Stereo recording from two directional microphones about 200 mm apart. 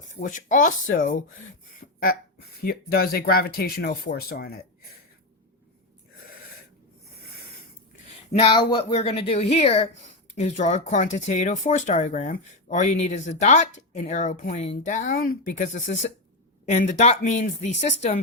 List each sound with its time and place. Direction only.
0.1 s speech: 40° left (ahead or behind)
1.8 s a sound: 45° left (ahead or behind)
2.6 s speech: 50° left (ahead or behind)
8.3 s speech: 30° left (ahead or behind)